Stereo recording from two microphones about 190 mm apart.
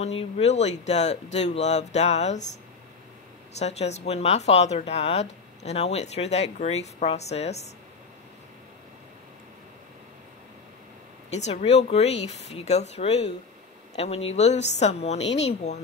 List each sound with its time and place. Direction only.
0.0 s speech: 30° left (ahead or behind)
3.5 s speech: 35° left (ahead or behind)
11.3 s speech: 35° left (ahead or behind)